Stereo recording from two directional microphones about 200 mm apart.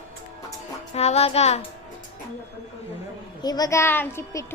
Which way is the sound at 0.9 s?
30° left (ahead or behind).